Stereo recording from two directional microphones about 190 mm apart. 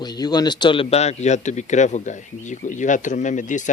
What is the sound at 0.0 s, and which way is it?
Speech, 20° left (ahead or behind).